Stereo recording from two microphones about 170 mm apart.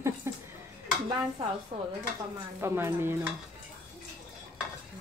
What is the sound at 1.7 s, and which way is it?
Dishes, 35° right (ahead or behind).